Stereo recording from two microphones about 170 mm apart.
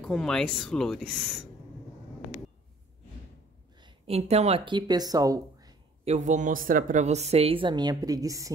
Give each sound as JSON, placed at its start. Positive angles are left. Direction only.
{"t": 0.0, "sound": "speech", "side_deg": 5}
{"t": 3.8, "sound": "speech", "side_deg": -35}
{"t": 6.0, "sound": "speech", "side_deg": -45}